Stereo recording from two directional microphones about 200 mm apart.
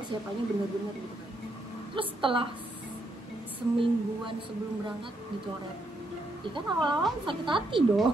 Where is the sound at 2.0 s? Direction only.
25° right (ahead or behind).